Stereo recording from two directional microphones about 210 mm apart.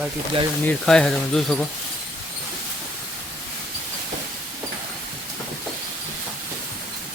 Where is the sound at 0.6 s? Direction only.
5° left (ahead or behind).